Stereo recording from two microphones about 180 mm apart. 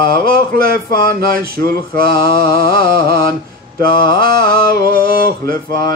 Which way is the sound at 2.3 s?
55° right (ahead or behind).